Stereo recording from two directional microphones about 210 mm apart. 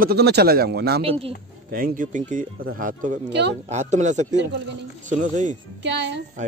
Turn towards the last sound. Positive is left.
turn(degrees=-55)  # may be behind; listen again after turning